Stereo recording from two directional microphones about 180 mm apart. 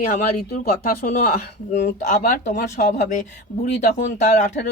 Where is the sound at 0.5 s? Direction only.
50° left (ahead or behind).